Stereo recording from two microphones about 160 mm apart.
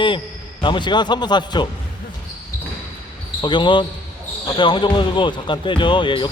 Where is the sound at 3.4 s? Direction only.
30° left (ahead or behind).